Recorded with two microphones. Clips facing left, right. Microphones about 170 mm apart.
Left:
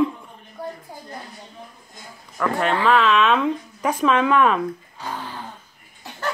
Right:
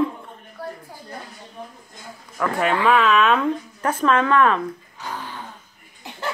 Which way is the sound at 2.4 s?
5° right (ahead or behind).